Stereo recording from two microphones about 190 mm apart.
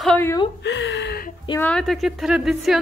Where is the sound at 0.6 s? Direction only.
70° left (ahead or behind).